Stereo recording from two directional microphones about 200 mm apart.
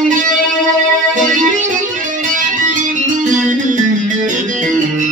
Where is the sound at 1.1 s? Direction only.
40° right (ahead or behind).